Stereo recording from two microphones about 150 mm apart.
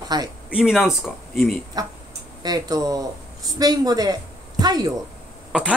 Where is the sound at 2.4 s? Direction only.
25° right (ahead or behind).